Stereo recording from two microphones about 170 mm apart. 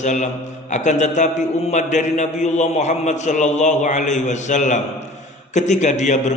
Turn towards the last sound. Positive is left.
turn(degrees=45)  # may be behind; listen again after turning